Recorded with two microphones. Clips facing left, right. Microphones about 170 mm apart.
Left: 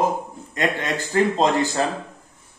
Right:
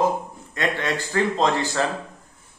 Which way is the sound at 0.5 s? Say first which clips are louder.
Left 1 dB; 20° left (ahead or behind).